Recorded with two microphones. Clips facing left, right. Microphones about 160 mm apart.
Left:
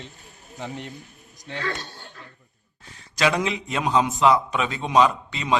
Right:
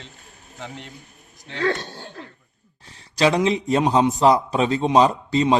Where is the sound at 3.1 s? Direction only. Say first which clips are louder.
Right 4 dB; 30° right (ahead or behind).